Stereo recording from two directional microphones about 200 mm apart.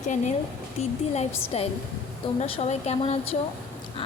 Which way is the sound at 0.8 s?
35° left (ahead or behind).